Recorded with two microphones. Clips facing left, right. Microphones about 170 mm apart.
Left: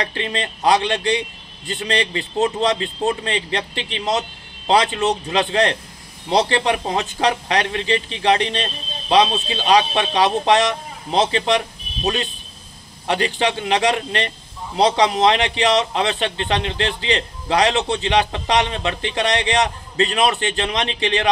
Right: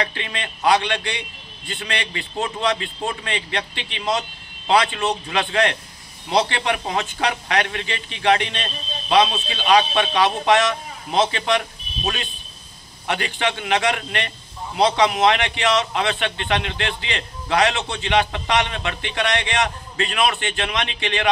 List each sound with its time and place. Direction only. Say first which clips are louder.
0.0 s a man's voice: left 3 dB; 35° left (ahead or behind)
13.0 s a man's voice: left 4 dB; 35° left (ahead or behind)